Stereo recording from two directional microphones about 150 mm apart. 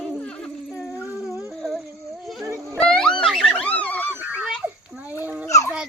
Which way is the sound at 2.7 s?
5° left (ahead or behind).